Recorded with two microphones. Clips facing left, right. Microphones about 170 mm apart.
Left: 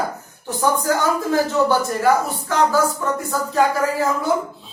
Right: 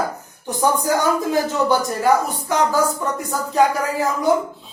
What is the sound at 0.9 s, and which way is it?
Speech, 15° right (ahead or behind).